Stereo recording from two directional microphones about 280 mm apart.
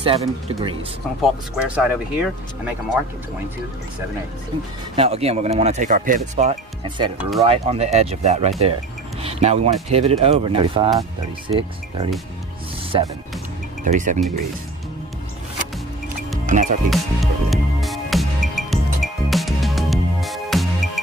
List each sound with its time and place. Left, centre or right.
0.0 s speech: centre
1.8 s speech: centre
4.9 s speech: right
7.2 s speech: centre
7.4 s speech: right
16.4 s music: right
16.9 s music: centre